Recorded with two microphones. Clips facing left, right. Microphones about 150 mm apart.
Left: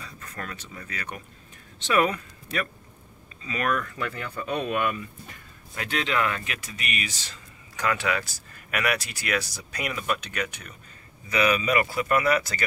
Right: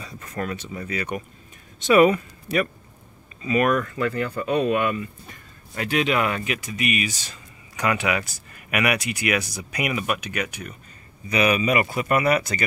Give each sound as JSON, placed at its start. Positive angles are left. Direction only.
{"t": 0.0, "sound": "speech", "side_deg": -15}